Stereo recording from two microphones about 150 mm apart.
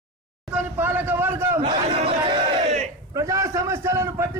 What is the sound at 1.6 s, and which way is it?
Speech, 40° right (ahead or behind).